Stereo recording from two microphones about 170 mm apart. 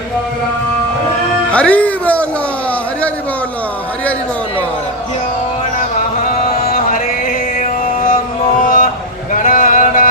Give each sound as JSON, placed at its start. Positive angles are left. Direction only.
{"t": 1.5, "sound": "music", "side_deg": 10}
{"t": 6.6, "sound": "chant", "side_deg": 60}
{"t": 7.6, "sound": "music", "side_deg": 55}
{"t": 8.6, "sound": "a sound", "side_deg": 55}